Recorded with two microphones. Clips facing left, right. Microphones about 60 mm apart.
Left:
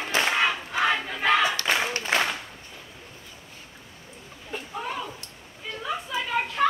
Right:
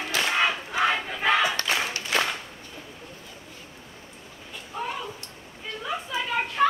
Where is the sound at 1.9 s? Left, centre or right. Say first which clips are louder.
Left 2 dB; left.